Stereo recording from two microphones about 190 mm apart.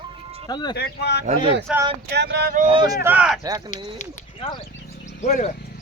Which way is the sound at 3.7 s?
40° left (ahead or behind).